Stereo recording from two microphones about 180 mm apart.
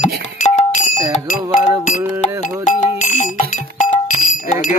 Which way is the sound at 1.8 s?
40° left (ahead or behind).